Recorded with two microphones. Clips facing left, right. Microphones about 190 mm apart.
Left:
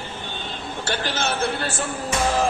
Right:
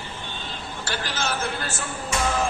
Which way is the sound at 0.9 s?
25° left (ahead or behind).